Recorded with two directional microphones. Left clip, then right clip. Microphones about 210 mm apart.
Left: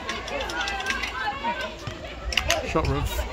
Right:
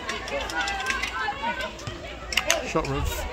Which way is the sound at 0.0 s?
5° right (ahead or behind).